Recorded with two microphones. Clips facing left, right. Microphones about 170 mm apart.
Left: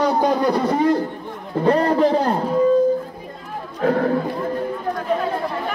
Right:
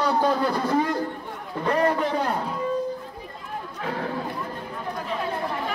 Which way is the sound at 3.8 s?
50° left (ahead or behind).